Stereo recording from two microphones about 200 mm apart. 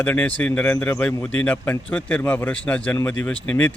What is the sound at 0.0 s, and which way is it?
Speech, 5° left (ahead or behind).